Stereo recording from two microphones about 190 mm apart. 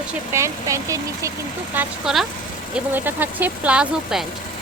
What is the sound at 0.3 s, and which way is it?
Speech, 15° right (ahead or behind).